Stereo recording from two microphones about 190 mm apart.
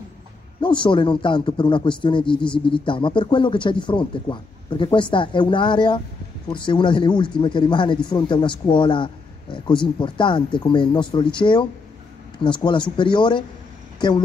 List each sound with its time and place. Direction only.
0.6 s a man's voice: 25° left (ahead or behind)